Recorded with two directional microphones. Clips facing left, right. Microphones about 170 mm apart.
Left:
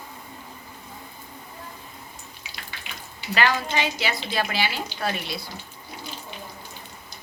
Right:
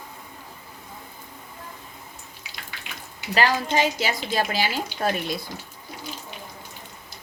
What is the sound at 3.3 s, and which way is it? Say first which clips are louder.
Speech: right 2 dB; 40° right (ahead or behind).